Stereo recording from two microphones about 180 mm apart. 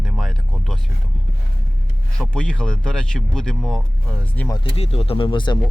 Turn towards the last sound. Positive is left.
turn(degrees=25)  # may be behind; listen again after turning